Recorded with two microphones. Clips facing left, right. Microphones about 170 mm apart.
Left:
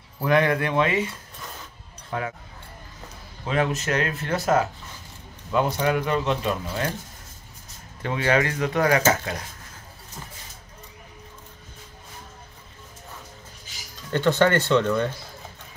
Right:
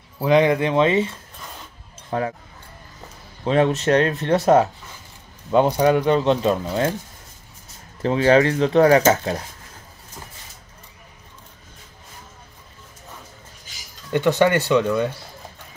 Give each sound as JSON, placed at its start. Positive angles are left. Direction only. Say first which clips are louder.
{"t": 0.2, "sound": "speech", "louder": "right 4 dB", "side_deg": -20}
{"t": 2.0, "sound": "speech", "louder": "right 5 dB", "side_deg": -35}
{"t": 3.4, "sound": "speech", "louder": "right 7 dB", "side_deg": -35}
{"t": 5.5, "sound": "speech", "louder": "right 6 dB", "side_deg": -30}
{"t": 6.6, "sound": "speech", "louder": "right 6 dB", "side_deg": -20}
{"t": 8.0, "sound": "speech", "louder": "right 7 dB", "side_deg": -30}
{"t": 14.1, "sound": "speech", "louder": "right 2 dB", "side_deg": -15}